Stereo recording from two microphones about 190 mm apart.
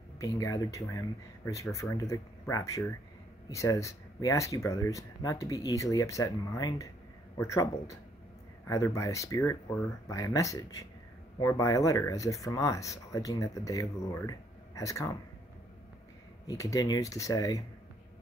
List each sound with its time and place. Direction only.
0.2 s speech: 20° left (ahead or behind)
16.4 s speech: 20° left (ahead or behind)